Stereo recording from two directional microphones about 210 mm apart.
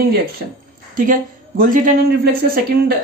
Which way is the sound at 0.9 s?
40° right (ahead or behind).